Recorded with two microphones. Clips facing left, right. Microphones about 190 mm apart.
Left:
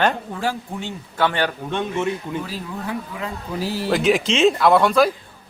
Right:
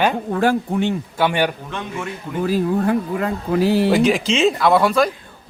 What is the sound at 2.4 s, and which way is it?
Speech, 50° right (ahead or behind).